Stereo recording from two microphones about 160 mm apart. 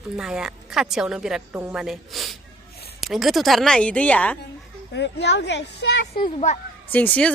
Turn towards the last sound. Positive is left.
turn(degrees=10)  # may be behind; listen again after turning